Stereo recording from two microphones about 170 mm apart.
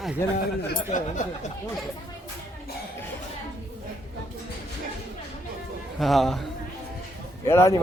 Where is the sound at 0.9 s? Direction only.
45° left (ahead or behind).